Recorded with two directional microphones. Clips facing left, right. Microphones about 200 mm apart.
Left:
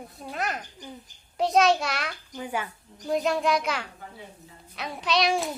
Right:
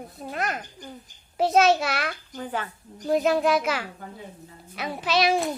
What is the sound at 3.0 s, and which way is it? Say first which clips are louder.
A child's voice: right 3 dB; centre (ahead or behind).